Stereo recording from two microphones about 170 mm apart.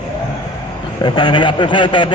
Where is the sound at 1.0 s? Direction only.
25° left (ahead or behind).